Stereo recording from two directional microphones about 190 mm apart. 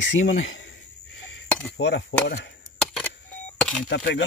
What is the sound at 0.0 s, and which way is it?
Speech, 75° left (ahead or behind).